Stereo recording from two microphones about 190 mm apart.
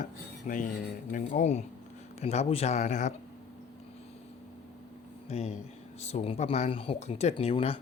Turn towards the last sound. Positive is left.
turn(degrees=30)  # may be behind; listen again after turning